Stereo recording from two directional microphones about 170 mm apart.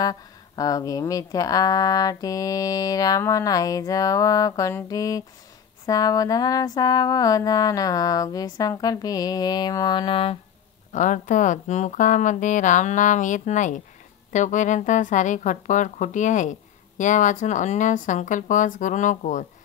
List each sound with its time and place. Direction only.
0.0 s speech: 20° left (ahead or behind)
10.9 s speech: 50° left (ahead or behind)